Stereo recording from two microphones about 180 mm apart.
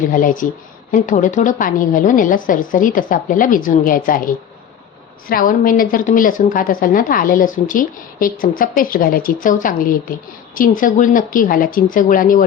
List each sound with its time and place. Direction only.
0.1 s a woman's voice: 50° left (ahead or behind)